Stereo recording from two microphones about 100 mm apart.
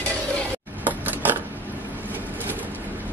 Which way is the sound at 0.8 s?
20° right (ahead or behind).